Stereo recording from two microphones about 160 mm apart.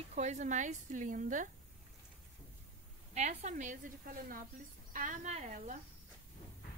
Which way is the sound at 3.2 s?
50° right (ahead or behind).